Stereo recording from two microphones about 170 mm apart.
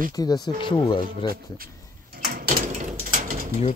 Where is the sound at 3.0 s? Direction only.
50° right (ahead or behind).